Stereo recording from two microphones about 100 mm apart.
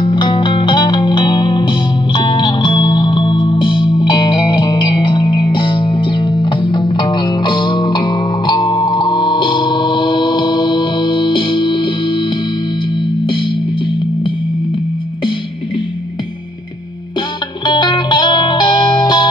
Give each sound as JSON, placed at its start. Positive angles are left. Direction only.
{"t": 0.0, "sound": "music", "side_deg": 50}
{"t": 17.6, "sound": "music", "side_deg": 50}